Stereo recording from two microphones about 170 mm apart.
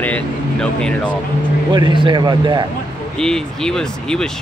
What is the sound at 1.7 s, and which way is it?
Speech, 30° right (ahead or behind).